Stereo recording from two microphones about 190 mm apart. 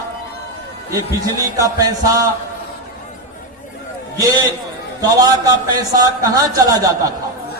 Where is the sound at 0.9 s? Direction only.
15° right (ahead or behind).